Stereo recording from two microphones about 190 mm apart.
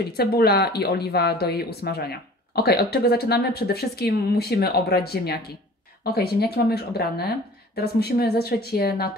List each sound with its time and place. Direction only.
0.1 s speech: 55° left (ahead or behind)
6.5 s speech: 55° left (ahead or behind)